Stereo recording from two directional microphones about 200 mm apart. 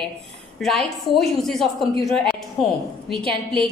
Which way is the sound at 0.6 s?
Centre (ahead or behind).